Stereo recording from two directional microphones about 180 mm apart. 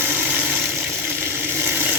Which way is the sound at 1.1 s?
10° right (ahead or behind).